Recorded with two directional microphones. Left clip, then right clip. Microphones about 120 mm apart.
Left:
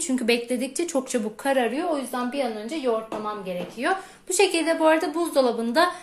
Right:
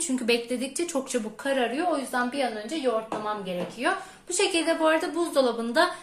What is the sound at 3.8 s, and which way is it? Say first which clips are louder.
Speech: left 3 dB; 50° left (ahead or behind).